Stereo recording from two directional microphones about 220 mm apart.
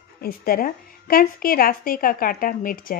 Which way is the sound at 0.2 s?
40° left (ahead or behind).